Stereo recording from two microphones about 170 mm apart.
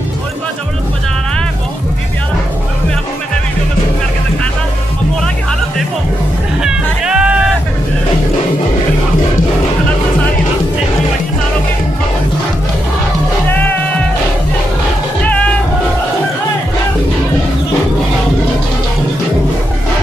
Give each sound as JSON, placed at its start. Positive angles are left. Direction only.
{"t": 6.6, "sound": "music", "side_deg": -5}
{"t": 13.5, "sound": "music", "side_deg": 10}